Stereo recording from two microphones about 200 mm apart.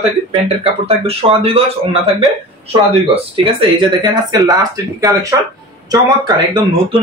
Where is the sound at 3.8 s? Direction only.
20° right (ahead or behind).